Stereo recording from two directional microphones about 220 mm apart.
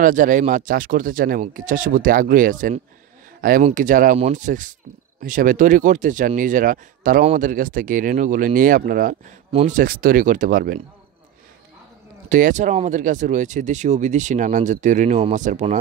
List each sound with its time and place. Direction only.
0.0 s speech: 35° right (ahead or behind)
12.3 s speech: 35° right (ahead or behind)